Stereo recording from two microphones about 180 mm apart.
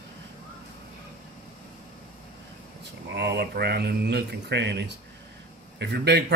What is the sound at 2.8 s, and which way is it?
Speech, 70° right (ahead or behind).